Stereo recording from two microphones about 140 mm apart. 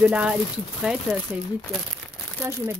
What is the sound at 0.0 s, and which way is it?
Speech, 5° right (ahead or behind).